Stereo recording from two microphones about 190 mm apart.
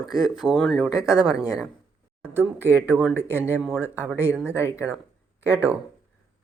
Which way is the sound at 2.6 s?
10° right (ahead or behind).